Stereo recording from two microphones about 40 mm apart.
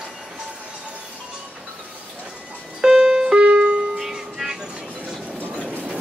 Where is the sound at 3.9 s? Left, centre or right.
Centre.